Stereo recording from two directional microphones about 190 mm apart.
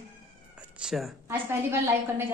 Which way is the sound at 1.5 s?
10° right (ahead or behind).